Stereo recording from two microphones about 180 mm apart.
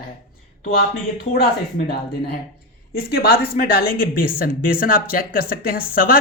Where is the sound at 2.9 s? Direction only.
55° left (ahead or behind).